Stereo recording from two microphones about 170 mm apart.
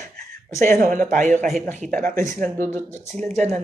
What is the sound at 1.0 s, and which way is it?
Speech, 45° right (ahead or behind).